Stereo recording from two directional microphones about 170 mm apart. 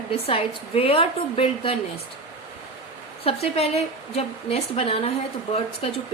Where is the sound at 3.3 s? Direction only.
35° left (ahead or behind).